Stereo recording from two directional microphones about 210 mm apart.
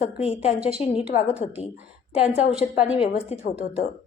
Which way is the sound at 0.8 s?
30° left (ahead or behind).